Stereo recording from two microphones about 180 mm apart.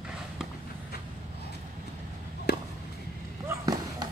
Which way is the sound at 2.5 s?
65° left (ahead or behind).